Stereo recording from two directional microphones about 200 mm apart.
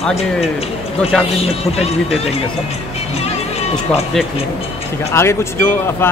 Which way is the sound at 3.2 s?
30° left (ahead or behind).